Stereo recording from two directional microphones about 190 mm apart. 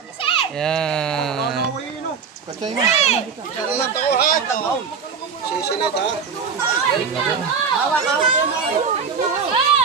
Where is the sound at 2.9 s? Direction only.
35° left (ahead or behind).